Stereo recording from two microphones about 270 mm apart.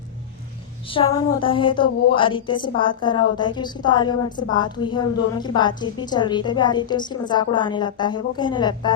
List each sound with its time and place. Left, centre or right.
0.9 s a woman's voice: centre